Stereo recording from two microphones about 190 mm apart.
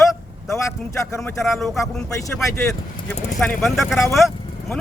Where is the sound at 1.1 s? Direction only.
Centre (ahead or behind).